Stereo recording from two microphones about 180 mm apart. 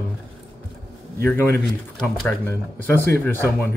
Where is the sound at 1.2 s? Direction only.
10° left (ahead or behind).